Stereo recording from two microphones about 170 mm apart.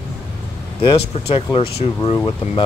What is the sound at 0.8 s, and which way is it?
Speech, 35° left (ahead or behind).